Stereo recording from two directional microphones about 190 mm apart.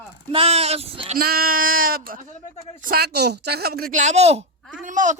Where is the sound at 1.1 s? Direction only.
50° right (ahead or behind).